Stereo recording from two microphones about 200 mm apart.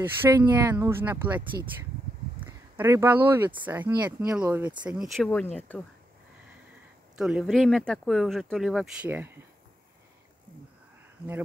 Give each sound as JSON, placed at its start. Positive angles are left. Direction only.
{"t": 0.2, "sound": "speech", "side_deg": -15}
{"t": 2.8, "sound": "speech", "side_deg": -10}
{"t": 3.9, "sound": "speech", "side_deg": -20}
{"t": 4.3, "sound": "speech", "side_deg": -5}
{"t": 7.2, "sound": "speech", "side_deg": -5}